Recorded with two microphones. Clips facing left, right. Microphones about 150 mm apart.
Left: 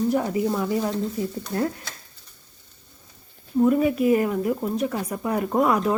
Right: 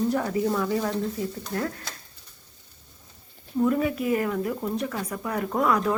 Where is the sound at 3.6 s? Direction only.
25° left (ahead or behind).